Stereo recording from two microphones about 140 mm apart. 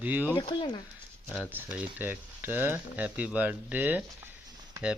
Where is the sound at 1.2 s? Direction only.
10° left (ahead or behind).